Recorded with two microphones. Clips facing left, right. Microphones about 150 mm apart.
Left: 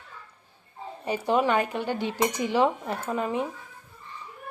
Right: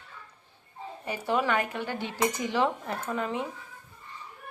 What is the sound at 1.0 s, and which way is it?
Speech, 20° left (ahead or behind).